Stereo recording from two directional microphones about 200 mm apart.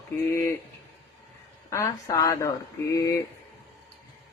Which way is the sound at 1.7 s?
15° left (ahead or behind).